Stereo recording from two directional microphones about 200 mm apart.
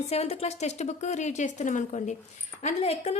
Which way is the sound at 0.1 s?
30° left (ahead or behind).